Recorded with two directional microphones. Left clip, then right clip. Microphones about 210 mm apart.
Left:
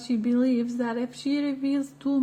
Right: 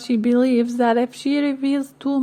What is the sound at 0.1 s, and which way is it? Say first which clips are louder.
Speech: right 7 dB; 40° right (ahead or behind).